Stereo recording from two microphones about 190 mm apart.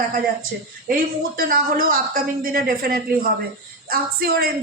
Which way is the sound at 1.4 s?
50° right (ahead or behind).